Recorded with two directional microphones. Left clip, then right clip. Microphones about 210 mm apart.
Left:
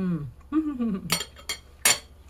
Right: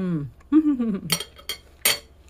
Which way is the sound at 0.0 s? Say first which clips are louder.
Right 3 dB; 35° right (ahead or behind).